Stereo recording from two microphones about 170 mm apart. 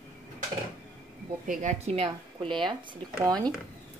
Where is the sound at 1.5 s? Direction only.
45° right (ahead or behind); by 3.0 s 30° right (ahead or behind).